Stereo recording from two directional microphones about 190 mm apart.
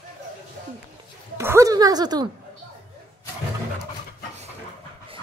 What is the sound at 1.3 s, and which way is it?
Speech, 15° right (ahead or behind).